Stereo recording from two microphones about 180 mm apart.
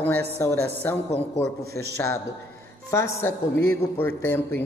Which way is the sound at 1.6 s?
60° right (ahead or behind).